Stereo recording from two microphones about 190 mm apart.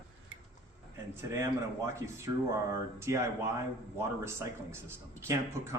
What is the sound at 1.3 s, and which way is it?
Speech, 15° right (ahead or behind).